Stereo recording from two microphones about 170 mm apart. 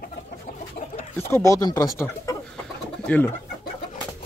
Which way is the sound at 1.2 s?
15° left (ahead or behind).